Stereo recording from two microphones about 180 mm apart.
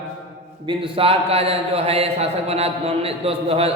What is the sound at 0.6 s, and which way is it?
A man's voice, 30° right (ahead or behind).